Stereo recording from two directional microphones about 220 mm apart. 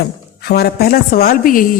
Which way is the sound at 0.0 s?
45° left (ahead or behind).